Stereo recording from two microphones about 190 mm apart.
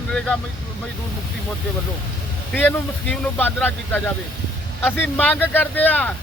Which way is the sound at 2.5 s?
10° left (ahead or behind).